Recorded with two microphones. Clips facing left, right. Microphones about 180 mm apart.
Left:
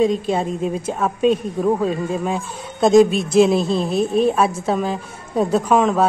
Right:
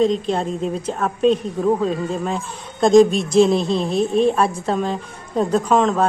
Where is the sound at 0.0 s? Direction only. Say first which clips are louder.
Even; 10° left (ahead or behind).